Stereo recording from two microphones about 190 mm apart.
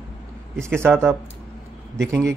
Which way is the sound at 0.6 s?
15° right (ahead or behind).